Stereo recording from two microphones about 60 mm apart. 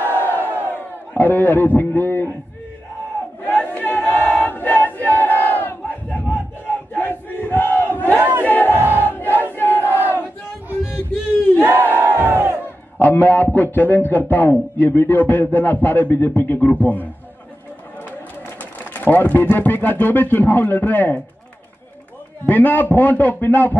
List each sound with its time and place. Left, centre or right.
0.0 s crowd: left
0.7 s a man's voice: left
3.4 s battle cry: left
8.2 s battle cry: right
8.5 s battle cry: left
9.0 s crowd: left
9.4 s battle cry: left
12.2 s crowd: right
13.0 s a man's voice: left
18.6 s speech: left
22.5 s speech: left